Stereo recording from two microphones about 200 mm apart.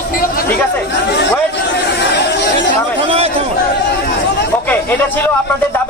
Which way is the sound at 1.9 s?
60° left (ahead or behind).